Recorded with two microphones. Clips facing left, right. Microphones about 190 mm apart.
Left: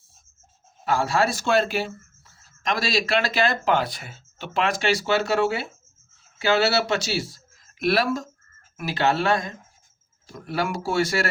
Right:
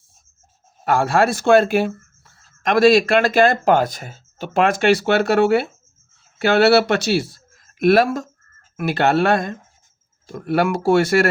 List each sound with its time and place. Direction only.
0.9 s speech: 55° right (ahead or behind)